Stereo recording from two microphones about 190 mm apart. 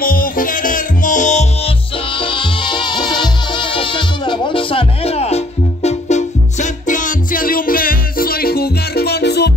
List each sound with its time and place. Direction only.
0.0 s music: 45° left (ahead or behind)
2.1 s music: 25° left (ahead or behind); by 9.5 s 60° left (ahead or behind)